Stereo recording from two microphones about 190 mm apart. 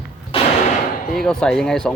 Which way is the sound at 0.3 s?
30° left (ahead or behind).